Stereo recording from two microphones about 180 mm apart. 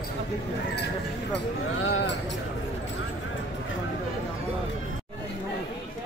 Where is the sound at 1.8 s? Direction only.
75° left (ahead or behind).